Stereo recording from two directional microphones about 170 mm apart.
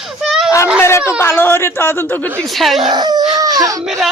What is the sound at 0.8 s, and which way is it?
Speech, 15° left (ahead or behind).